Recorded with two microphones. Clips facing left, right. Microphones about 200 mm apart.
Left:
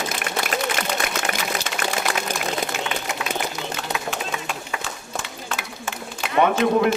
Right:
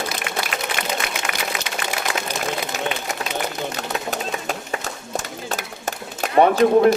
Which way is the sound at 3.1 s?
40° right (ahead or behind).